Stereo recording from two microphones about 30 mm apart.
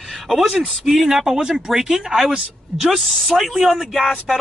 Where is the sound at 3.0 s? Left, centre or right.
Centre.